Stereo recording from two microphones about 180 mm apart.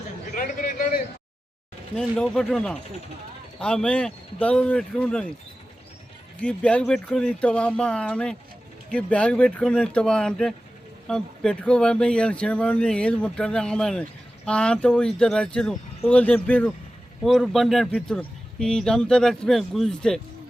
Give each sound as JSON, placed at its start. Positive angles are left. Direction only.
{"t": 0.3, "sound": "a sound", "side_deg": 50}
{"t": 2.0, "sound": "speech", "side_deg": 5}
{"t": 6.4, "sound": "speech", "side_deg": 5}